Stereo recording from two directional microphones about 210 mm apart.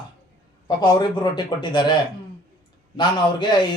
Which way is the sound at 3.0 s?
20° left (ahead or behind).